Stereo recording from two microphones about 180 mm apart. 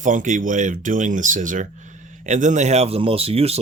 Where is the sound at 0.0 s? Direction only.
45° right (ahead or behind).